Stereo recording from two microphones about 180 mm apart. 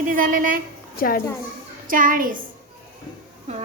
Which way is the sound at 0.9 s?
55° left (ahead or behind).